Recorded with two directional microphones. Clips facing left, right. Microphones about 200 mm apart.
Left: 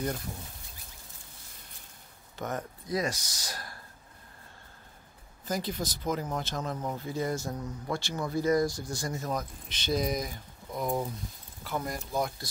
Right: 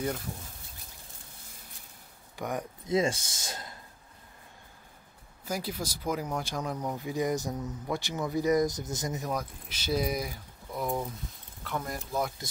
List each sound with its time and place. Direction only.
2.3 s speech: 15° right (ahead or behind)
2.9 s speech: 25° right (ahead or behind)
5.4 s speech: 10° right (ahead or behind)
7.5 s speech: centre (ahead or behind)
7.9 s speech: 20° right (ahead or behind)
9.7 s speech: 5° right (ahead or behind)